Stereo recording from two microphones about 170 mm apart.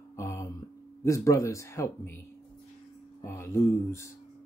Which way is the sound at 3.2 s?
15° left (ahead or behind).